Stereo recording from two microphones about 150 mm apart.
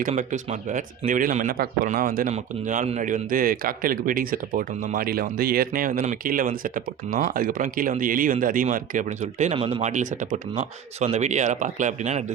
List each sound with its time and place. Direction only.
0.1 s speech: 55° right (ahead or behind); by 1.9 s 85° right
1.9 s speech: 70° right (ahead or behind)
2.3 s a man's voice: 50° right (ahead or behind)
9.6 s speech: 35° right (ahead or behind)
9.8 s speech: 55° right (ahead or behind)